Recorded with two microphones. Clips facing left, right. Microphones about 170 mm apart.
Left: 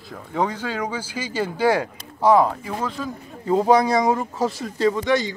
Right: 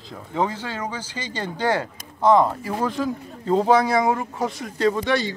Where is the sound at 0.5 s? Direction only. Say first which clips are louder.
Left 3 dB; 10° left (ahead or behind).